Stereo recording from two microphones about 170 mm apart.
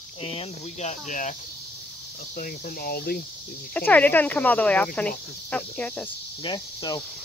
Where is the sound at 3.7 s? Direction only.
10° left (ahead or behind).